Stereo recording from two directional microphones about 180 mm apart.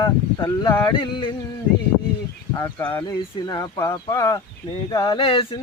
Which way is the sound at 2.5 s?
25° left (ahead or behind).